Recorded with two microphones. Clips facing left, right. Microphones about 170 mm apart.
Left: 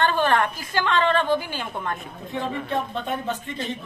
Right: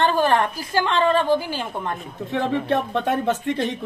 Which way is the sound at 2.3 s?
75° right (ahead or behind).